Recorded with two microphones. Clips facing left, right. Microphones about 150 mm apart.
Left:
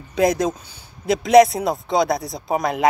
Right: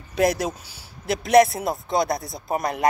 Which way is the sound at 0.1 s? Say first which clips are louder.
Left 3 dB; 5° right (ahead or behind).